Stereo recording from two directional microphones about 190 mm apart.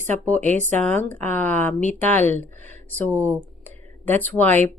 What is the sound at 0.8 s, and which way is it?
A woman's voice, 10° left (ahead or behind).